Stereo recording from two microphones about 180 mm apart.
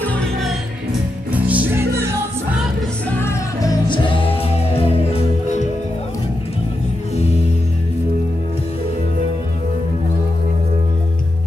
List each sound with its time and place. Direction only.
0.0 s music: 5° left (ahead or behind)
1.3 s music: 10° right (ahead or behind)
3.2 s music: 15° left (ahead or behind)
3.9 s music: 30° left (ahead or behind)